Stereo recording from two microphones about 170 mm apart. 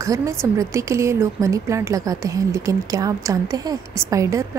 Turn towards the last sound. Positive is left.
turn(degrees=-15)  # may be behind; listen again after turning